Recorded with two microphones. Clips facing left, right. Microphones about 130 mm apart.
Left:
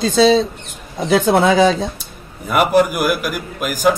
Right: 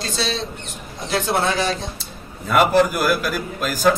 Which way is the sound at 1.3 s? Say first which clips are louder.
Left 6 dB; 90° left.